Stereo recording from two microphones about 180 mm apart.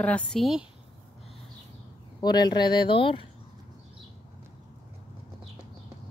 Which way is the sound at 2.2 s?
25° left (ahead or behind).